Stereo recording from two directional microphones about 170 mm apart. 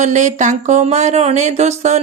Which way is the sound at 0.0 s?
45° right (ahead or behind).